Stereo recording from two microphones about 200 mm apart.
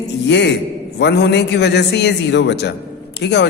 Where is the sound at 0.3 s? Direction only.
60° left (ahead or behind).